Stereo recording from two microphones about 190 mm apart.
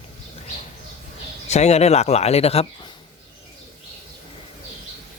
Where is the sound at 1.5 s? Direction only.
35° left (ahead or behind).